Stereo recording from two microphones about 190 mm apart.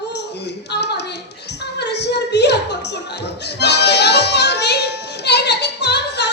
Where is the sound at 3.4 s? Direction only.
60° left (ahead or behind).